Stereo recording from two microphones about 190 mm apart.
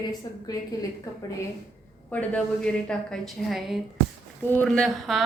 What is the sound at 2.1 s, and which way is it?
A woman's voice, 10° left (ahead or behind).